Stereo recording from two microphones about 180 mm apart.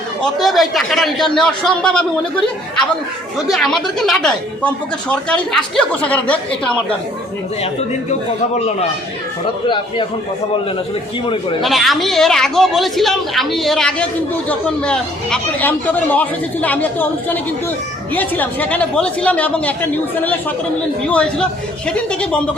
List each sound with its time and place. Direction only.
0.2 s a woman's voice: centre (ahead or behind)
3.5 s a woman's voice: centre (ahead or behind)
8.5 s speech: 35° left (ahead or behind)
9.6 s a man's voice: 25° left (ahead or behind)
11.6 s a woman's voice: centre (ahead or behind)
21.1 s a woman's voice: 5° left (ahead or behind)